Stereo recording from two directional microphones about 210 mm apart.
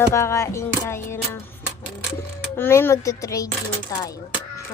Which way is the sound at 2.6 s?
10° left (ahead or behind).